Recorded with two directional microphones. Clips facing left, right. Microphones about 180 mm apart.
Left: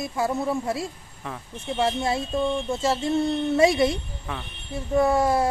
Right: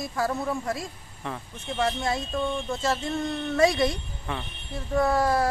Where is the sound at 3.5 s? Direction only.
25° left (ahead or behind).